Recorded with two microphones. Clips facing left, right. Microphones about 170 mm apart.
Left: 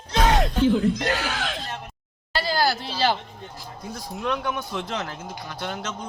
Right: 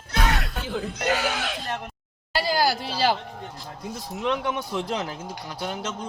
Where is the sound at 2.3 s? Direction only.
10° right (ahead or behind).